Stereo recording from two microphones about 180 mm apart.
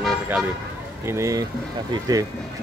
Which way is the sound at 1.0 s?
15° right (ahead or behind).